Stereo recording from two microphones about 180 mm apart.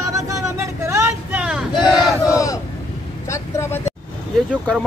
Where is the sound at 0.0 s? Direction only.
20° right (ahead or behind).